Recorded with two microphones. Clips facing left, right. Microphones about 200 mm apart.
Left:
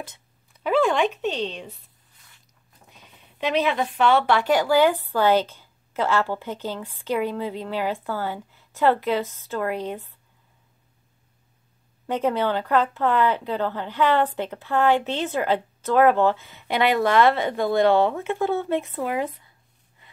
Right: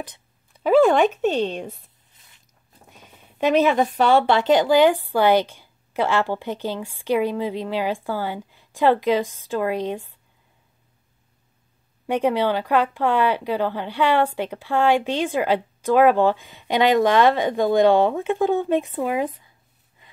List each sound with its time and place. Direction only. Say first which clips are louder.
0.7 s speech: right 5 dB; 45° right (ahead or behind)
2.9 s a woman's voice: right 3 dB; 45° right (ahead or behind); by 10.0 s 15° right (ahead or behind)
12.1 s a woman's voice: right 3 dB; 15° right (ahead or behind)